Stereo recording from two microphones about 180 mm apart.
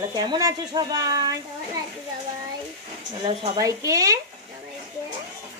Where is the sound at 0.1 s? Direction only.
20° right (ahead or behind).